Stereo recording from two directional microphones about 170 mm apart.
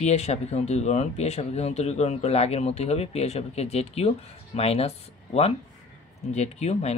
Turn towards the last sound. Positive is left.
turn(degrees=40)  # may be behind; listen again after turning